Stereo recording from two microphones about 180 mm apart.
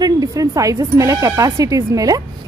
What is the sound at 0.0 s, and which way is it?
Speech, 20° right (ahead or behind).